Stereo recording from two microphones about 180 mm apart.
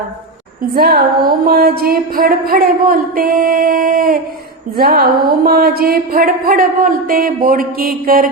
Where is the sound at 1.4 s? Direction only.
60° right (ahead or behind).